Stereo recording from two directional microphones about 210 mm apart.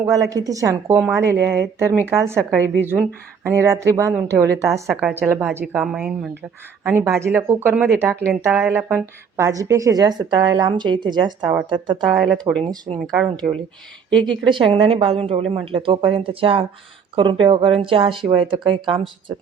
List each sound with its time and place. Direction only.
0.0 s a woman's voice: 15° right (ahead or behind)
12.1 s a woman's voice: centre (ahead or behind)
12.6 s a woman's voice: 25° right (ahead or behind)
13.0 s a woman's voice: centre (ahead or behind)
14.4 s a woman's voice: 25° right (ahead or behind)